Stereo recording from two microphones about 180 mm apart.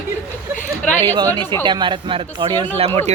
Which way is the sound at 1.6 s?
25° right (ahead or behind).